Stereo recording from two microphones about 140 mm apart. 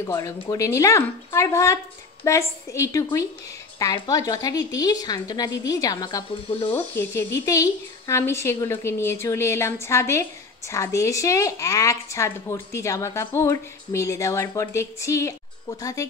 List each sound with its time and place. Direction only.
0.0 s a woman's voice: 20° left (ahead or behind)
6.3 s speech: 40° left (ahead or behind)
6.7 s a woman's voice: 15° left (ahead or behind)